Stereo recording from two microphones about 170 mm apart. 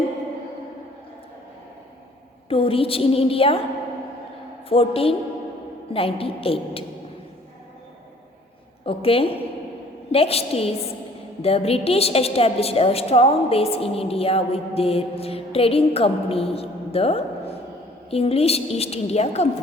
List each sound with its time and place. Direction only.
2.5 s a woman's voice: 35° left (ahead or behind)
4.7 s a woman's voice: 35° left (ahead or behind)
8.8 s a woman's voice: 35° left (ahead or behind)